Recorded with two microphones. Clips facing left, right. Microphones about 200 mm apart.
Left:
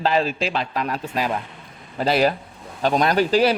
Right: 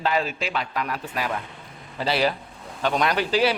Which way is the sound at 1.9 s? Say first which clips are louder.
Left 4 dB; 45° left (ahead or behind).